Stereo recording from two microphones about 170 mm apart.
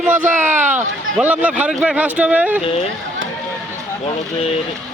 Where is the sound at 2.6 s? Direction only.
35° left (ahead or behind).